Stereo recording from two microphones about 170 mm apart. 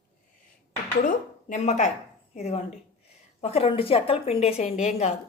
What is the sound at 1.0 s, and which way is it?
A woman's voice, 50° left (ahead or behind).